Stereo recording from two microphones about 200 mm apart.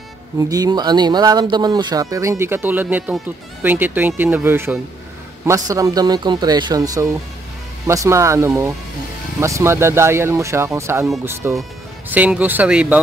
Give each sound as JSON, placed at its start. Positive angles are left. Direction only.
{"t": 0.4, "sound": "speech", "side_deg": -20}